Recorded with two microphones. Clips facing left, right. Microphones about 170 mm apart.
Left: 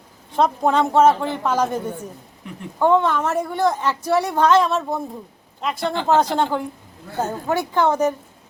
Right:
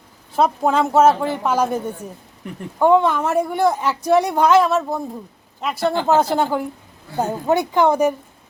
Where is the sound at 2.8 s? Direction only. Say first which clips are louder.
Right 2 dB; 10° right (ahead or behind).